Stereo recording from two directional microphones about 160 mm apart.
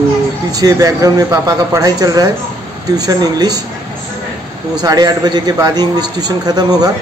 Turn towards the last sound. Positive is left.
turn(degrees=-25)  # may be behind; listen again after turning